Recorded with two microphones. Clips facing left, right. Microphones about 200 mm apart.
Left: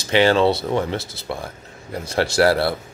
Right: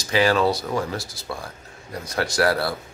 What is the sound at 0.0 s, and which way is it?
Speech, 25° left (ahead or behind).